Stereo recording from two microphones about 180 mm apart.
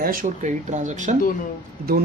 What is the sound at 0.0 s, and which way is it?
Speech, 50° right (ahead or behind).